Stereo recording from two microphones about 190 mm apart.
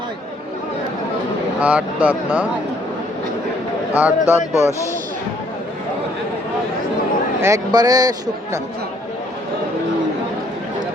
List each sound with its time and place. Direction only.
1.5 s speech: 5° right (ahead or behind)
3.9 s speech: 10° right (ahead or behind)
7.4 s speech: 20° right (ahead or behind)